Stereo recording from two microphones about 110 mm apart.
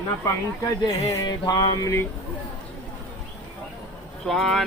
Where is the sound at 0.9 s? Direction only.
30° left (ahead or behind).